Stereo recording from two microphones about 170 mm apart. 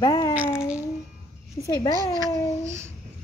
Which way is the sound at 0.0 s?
20° left (ahead or behind).